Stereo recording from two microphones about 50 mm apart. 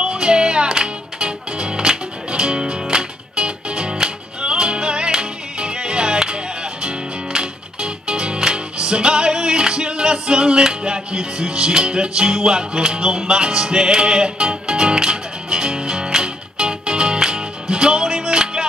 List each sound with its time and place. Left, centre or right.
0.0 s music: centre
7.3 s music: centre